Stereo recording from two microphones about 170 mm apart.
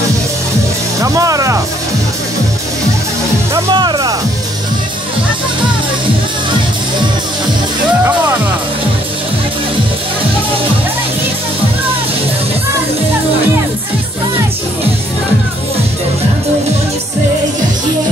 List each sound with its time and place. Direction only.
1.0 s speech: 20° right (ahead or behind)
3.5 s speech: 25° right (ahead or behind)